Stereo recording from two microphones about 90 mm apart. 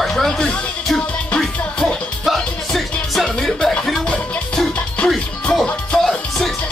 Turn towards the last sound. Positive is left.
turn(degrees=5)  # may be behind; listen again after turning